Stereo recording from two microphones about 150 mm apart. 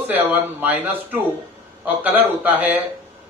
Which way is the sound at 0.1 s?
15° right (ahead or behind).